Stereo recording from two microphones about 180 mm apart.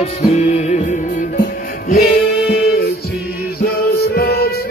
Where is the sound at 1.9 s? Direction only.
60° left (ahead or behind).